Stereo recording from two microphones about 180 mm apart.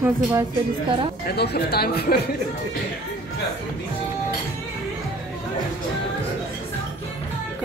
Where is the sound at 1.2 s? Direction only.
65° left (ahead or behind).